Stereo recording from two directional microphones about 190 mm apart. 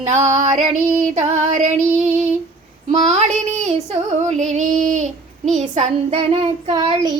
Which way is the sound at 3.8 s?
40° right (ahead or behind).